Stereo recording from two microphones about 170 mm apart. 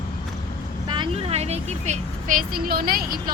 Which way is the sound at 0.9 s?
35° right (ahead or behind).